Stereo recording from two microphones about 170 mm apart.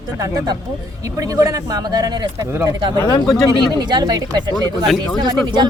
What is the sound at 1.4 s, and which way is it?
A woman's voice, 20° right (ahead or behind).